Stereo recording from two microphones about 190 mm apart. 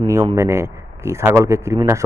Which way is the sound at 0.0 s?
15° right (ahead or behind).